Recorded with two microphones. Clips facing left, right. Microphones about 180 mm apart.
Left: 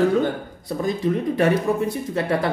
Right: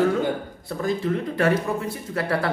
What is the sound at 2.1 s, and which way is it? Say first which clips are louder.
Speech: even; 20° left (ahead or behind).